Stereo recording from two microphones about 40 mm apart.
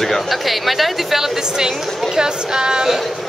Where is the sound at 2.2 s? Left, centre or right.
Centre.